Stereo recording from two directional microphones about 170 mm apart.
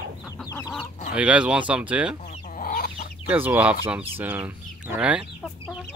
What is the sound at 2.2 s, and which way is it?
Chicken, 50° left (ahead or behind).